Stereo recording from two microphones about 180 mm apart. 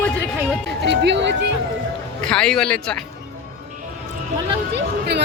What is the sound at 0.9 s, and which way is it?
Speech, 80° right.